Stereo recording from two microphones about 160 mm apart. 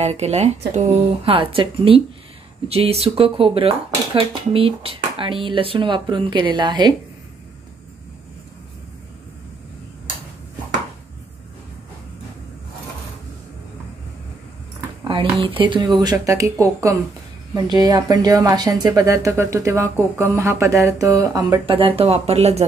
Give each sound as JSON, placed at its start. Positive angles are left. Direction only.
{"t": 0.0, "sound": "speech", "side_deg": -45}
{"t": 15.0, "sound": "speech", "side_deg": -30}